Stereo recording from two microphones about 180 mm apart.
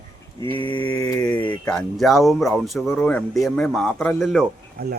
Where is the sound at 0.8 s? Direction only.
10° left (ahead or behind).